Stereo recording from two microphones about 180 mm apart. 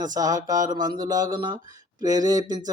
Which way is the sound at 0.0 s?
20° right (ahead or behind).